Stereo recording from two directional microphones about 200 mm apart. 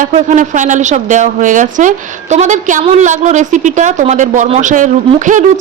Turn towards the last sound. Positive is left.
turn(degrees=-40)  # may be behind; listen again after turning